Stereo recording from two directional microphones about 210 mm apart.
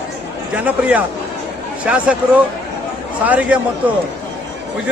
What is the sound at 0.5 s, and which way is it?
A man's voice, 5° right (ahead or behind).